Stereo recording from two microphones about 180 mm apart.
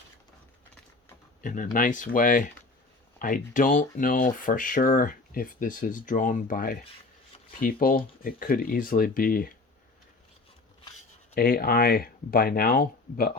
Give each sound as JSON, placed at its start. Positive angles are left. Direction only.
{"t": 1.4, "sound": "speech", "side_deg": 45}
{"t": 11.3, "sound": "speech", "side_deg": 55}